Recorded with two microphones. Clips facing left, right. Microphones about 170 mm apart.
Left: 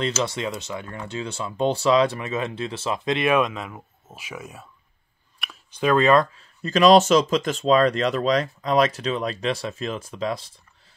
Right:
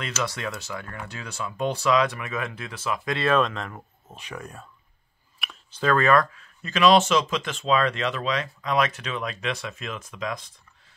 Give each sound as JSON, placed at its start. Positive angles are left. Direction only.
{"t": 0.0, "sound": "speech", "side_deg": 25}
{"t": 5.7, "sound": "speech", "side_deg": 15}
{"t": 6.6, "sound": "speech", "side_deg": 40}